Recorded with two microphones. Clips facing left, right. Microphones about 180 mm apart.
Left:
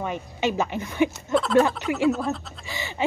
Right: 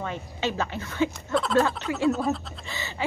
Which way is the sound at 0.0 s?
15° left (ahead or behind).